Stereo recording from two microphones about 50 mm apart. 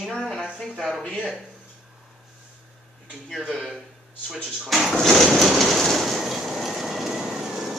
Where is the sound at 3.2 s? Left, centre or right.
Centre.